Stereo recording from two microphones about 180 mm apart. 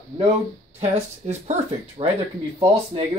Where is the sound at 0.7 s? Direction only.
35° right (ahead or behind).